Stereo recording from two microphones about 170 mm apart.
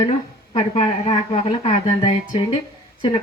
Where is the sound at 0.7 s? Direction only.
35° left (ahead or behind).